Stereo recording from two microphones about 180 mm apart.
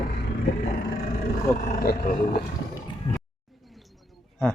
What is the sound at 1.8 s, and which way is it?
Speech, 55° left (ahead or behind).